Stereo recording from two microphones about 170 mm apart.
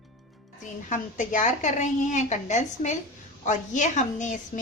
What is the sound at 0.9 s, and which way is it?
A woman's voice, 50° left (ahead or behind).